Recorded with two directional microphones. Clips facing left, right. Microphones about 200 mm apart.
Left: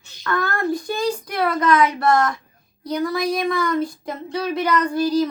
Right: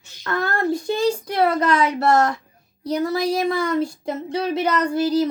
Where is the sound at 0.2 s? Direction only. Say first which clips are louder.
Even; 25° right (ahead or behind).